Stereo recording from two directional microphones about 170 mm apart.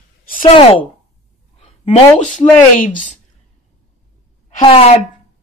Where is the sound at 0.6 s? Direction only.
30° left (ahead or behind).